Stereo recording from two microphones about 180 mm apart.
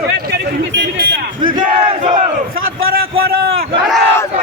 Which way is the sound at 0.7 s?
65° right (ahead or behind).